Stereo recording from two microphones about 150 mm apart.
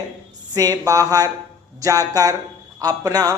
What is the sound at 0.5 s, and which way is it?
Speech, 25° right (ahead or behind).